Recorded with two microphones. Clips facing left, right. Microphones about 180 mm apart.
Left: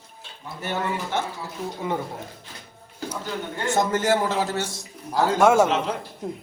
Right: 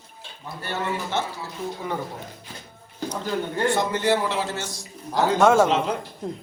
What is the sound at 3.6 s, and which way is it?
A man's voice, 45° left (ahead or behind).